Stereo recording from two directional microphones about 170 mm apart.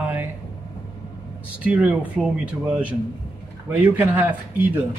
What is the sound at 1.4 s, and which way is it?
A man's voice, 10° right (ahead or behind).